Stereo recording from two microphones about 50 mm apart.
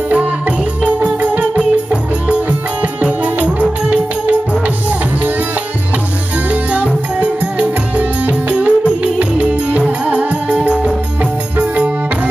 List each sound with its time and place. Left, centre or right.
0.8 s music: right
3.0 s music: right
6.7 s music: right